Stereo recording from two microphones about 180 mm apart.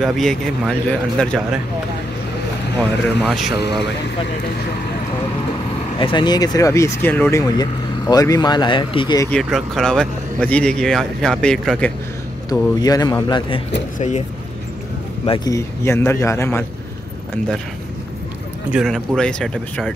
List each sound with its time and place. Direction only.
0.0 s speech: centre (ahead or behind)
3.3 s speech: centre (ahead or behind)
5.9 s speech: 25° left (ahead or behind)
9.3 s speech: centre (ahead or behind)
12.5 s speech: 20° left (ahead or behind)
13.9 s speech: 40° left (ahead or behind)
15.2 s speech: 25° left (ahead or behind)
18.7 s speech: centre (ahead or behind)